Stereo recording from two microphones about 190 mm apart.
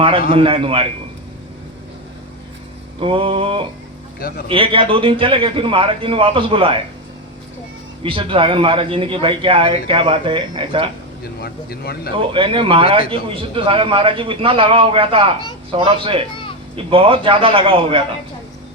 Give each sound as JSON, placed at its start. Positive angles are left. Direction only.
{"t": 0.3, "sound": "a man's voice", "side_deg": -30}
{"t": 3.0, "sound": "a man's voice", "side_deg": -30}
{"t": 8.0, "sound": "a man's voice", "side_deg": -30}
{"t": 11.2, "sound": "speech", "side_deg": 55}
{"t": 12.1, "sound": "a man's voice", "side_deg": -25}